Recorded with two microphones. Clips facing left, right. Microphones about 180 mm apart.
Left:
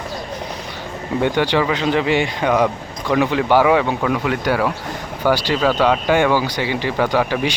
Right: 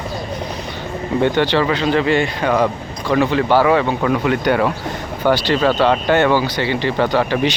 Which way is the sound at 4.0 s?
Centre (ahead or behind).